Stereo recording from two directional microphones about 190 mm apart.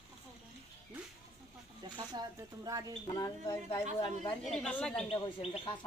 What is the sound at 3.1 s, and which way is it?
Speech, 20° left (ahead or behind).